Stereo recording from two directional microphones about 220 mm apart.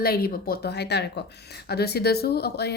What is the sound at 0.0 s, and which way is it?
Speech, 45° left (ahead or behind).